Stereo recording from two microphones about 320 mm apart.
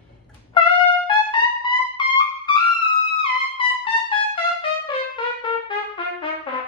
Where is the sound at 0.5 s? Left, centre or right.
Centre.